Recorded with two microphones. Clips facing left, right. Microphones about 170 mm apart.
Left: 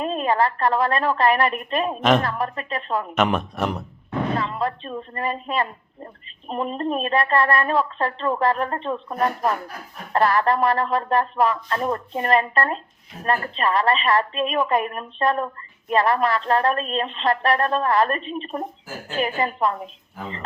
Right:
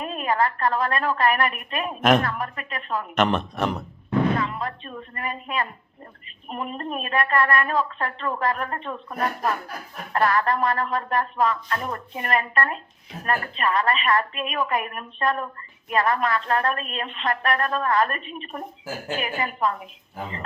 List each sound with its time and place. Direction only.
0.0 s speech: 30° left (ahead or behind)
2.0 s a woman's voice: centre (ahead or behind)
2.2 s a woman's voice: 30° left (ahead or behind)
3.2 s speech: 10° left (ahead or behind)
4.4 s a woman's voice: 30° left (ahead or behind)